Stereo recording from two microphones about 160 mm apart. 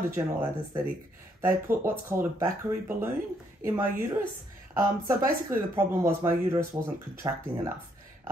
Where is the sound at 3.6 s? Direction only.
15° right (ahead or behind).